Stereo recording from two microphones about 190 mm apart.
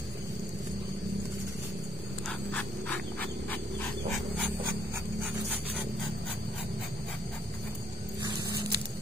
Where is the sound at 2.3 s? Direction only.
5° left (ahead or behind).